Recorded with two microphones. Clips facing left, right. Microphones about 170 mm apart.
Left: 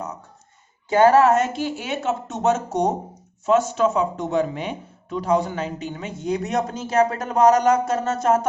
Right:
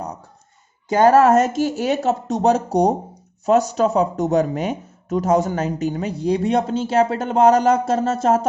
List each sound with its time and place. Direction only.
0.9 s speech: 40° right (ahead or behind)